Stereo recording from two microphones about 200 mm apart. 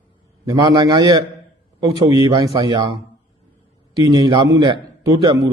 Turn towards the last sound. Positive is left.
turn(degrees=-20)  # may be behind; listen again after turning